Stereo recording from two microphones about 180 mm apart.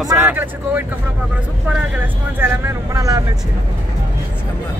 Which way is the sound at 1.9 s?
15° right (ahead or behind).